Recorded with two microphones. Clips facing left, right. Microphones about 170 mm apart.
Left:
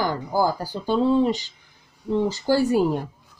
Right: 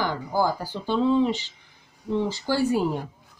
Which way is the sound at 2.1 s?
45° left (ahead or behind).